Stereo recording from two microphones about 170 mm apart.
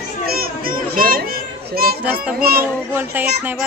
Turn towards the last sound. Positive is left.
turn(degrees=-10)  # may be behind; listen again after turning